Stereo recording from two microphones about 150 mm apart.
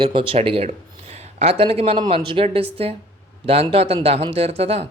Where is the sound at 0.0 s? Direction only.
35° right (ahead or behind).